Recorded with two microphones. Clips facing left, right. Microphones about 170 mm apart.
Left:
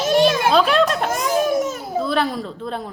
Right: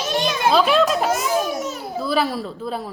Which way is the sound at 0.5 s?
Centre (ahead or behind).